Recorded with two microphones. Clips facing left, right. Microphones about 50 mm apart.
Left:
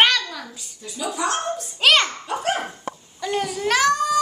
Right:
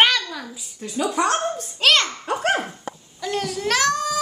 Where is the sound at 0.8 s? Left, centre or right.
Right.